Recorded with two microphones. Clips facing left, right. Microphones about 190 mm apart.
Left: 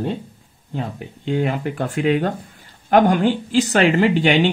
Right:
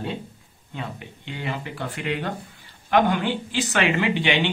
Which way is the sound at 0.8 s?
45° left (ahead or behind).